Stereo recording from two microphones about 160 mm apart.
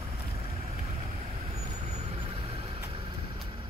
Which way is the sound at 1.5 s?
40° right (ahead or behind).